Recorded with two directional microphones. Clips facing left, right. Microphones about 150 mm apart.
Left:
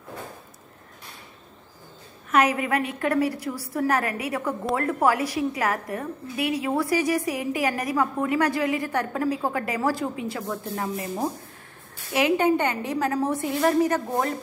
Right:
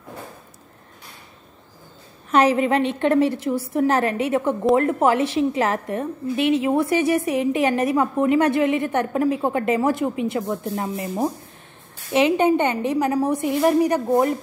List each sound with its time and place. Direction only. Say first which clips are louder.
2.3 s a woman's voice: right 5 dB; 30° right (ahead or behind)